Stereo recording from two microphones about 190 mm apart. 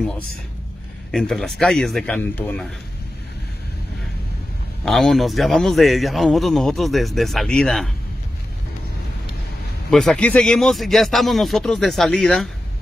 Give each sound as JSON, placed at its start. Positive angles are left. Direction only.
{"t": 1.1, "sound": "a man's voice", "side_deg": 0}
{"t": 4.8, "sound": "a man's voice", "side_deg": 0}
{"t": 9.8, "sound": "a man's voice", "side_deg": 5}